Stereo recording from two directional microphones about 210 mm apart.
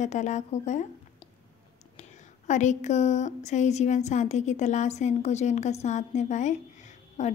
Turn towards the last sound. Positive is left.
turn(degrees=35)  # may be behind; listen again after turning